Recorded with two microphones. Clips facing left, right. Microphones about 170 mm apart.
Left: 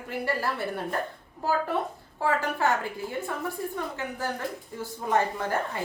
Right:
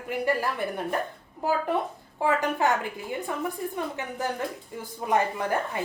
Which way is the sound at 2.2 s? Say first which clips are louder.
Right 2 dB; 15° right (ahead or behind).